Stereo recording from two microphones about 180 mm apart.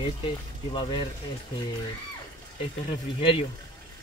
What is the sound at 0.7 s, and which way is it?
Speech, 25° left (ahead or behind).